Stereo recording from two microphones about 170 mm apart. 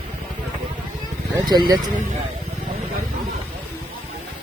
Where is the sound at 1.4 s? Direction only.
25° right (ahead or behind).